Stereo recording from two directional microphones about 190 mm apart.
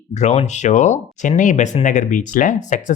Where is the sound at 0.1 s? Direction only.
35° left (ahead or behind).